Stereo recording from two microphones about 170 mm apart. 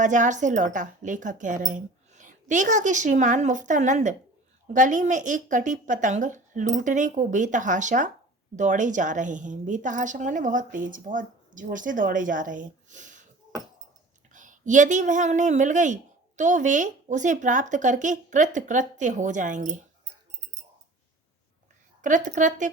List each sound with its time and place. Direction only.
0.0 s a woman's voice: 45° right (ahead or behind)
14.3 s a woman's voice: 50° right (ahead or behind)
22.0 s a woman's voice: 50° right (ahead or behind)